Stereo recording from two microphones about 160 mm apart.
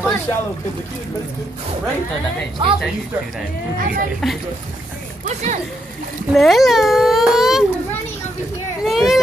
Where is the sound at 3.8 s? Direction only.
60° right (ahead or behind).